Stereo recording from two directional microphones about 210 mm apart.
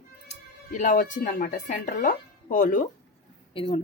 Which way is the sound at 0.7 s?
40° left (ahead or behind).